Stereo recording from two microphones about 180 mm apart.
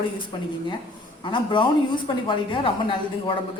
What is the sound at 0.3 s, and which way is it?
A woman's voice, 25° left (ahead or behind).